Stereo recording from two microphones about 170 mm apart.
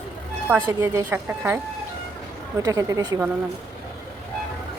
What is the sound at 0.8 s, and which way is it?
Speech, 15° right (ahead or behind).